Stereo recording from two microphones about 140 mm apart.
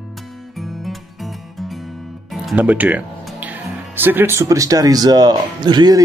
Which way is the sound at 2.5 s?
10° right (ahead or behind).